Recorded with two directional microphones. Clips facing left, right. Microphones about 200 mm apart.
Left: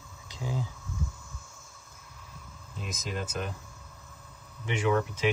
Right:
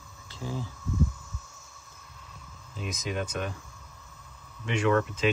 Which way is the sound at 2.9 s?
Centre (ahead or behind).